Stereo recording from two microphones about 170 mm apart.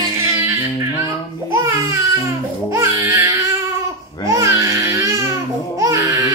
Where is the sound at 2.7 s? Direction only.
15° right (ahead or behind).